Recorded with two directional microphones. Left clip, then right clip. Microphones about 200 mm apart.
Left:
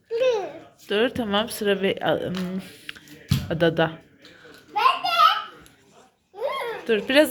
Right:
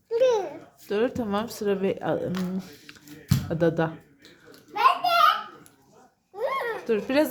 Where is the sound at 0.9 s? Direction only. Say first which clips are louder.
Left 3 dB; 5° right (ahead or behind).